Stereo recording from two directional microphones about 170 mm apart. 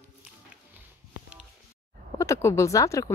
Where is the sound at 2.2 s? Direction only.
15° left (ahead or behind).